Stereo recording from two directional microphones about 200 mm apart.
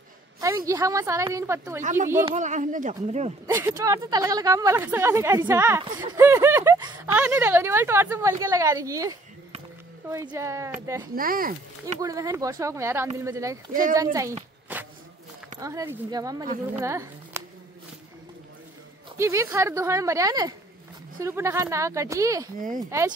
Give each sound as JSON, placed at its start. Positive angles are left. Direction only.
{"t": 0.4, "sound": "speech", "side_deg": -15}
{"t": 1.8, "sound": "speech", "side_deg": -40}
{"t": 3.4, "sound": "speech", "side_deg": -10}
{"t": 11.1, "sound": "speech", "side_deg": -45}
{"t": 12.0, "sound": "speech", "side_deg": -15}
{"t": 13.9, "sound": "a sound", "side_deg": -15}
{"t": 15.6, "sound": "speech", "side_deg": -15}
{"t": 19.1, "sound": "speech", "side_deg": -15}